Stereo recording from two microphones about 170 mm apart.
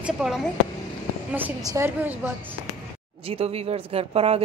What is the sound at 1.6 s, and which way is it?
Speech, 20° right (ahead or behind).